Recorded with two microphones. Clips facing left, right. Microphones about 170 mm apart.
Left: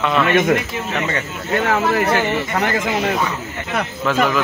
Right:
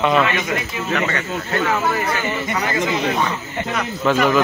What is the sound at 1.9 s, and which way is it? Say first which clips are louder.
Speech: left 5 dB; 65° left (ahead or behind).